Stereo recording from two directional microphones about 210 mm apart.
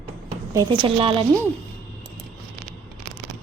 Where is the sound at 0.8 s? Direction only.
25° right (ahead or behind).